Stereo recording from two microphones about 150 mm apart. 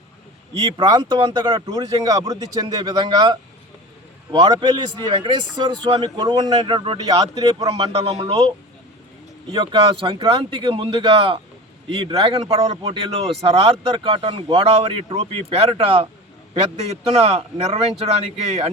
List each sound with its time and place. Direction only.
0.8 s speech: 30° right (ahead or behind)
7.9 s a man's voice: 45° right (ahead or behind)